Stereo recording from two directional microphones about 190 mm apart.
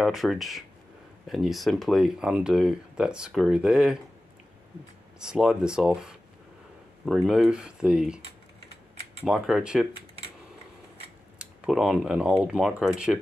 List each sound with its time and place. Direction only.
0.0 s speech: centre (ahead or behind)
5.2 s speech: 5° right (ahead or behind)
9.2 s speech: 5° right (ahead or behind)
11.3 s speech: 5° right (ahead or behind)